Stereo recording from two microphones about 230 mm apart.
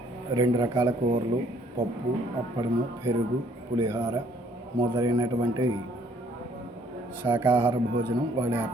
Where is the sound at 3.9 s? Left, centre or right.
Centre.